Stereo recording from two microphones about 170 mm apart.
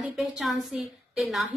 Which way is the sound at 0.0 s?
5° right (ahead or behind).